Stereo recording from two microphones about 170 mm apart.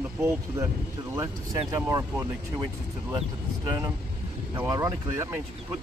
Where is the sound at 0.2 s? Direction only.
15° right (ahead or behind).